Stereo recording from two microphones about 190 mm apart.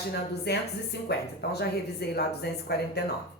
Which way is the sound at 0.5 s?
60° left (ahead or behind).